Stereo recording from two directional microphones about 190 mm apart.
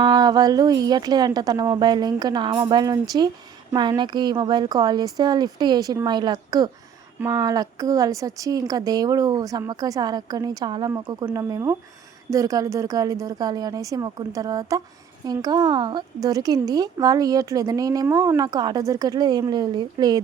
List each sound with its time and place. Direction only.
0.0 s a woman's voice: 20° right (ahead or behind)